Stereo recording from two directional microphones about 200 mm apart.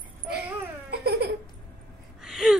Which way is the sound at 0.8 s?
55° right (ahead or behind).